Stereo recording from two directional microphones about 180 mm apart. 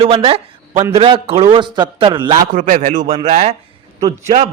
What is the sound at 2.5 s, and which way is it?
A man's voice, 45° right (ahead or behind).